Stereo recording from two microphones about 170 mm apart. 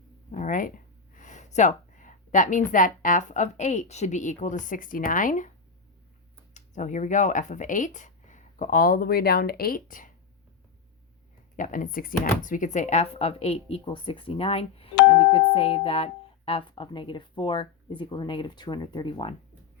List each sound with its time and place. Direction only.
0.3 s a sound: 45° left (ahead or behind)
1.1 s a woman's voice: 45° left (ahead or behind)
6.5 s speech: 45° left (ahead or behind)
11.5 s speech: 50° left (ahead or behind); by 19.3 s 25° left (ahead or behind)